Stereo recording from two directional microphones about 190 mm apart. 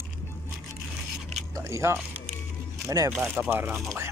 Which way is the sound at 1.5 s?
15° right (ahead or behind).